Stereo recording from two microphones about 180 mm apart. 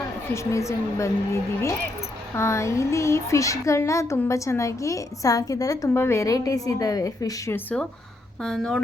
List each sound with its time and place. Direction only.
0.3 s speech: 15° left (ahead or behind)